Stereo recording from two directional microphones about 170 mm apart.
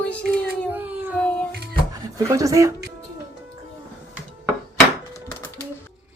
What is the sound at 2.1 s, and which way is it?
Speech, 20° right (ahead or behind).